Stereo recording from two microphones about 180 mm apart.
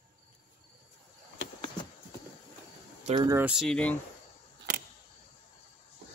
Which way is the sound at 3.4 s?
Centre (ahead or behind).